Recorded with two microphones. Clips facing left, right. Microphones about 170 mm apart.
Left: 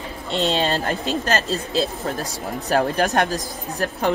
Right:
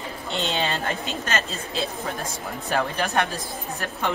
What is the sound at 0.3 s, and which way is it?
Speech, 35° left (ahead or behind).